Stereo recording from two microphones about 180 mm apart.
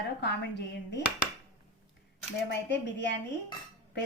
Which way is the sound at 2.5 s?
80° left.